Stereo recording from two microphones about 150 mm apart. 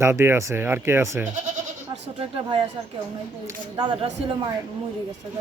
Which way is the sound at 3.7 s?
35° right (ahead or behind).